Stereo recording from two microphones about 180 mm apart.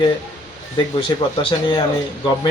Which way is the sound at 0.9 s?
30° left (ahead or behind).